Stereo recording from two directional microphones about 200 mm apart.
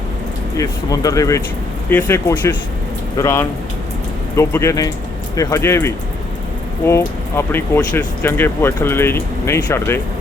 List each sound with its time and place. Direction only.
0.5 s speech: 15° left (ahead or behind)